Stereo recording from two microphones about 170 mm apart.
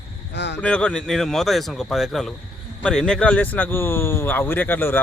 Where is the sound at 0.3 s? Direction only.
90° left.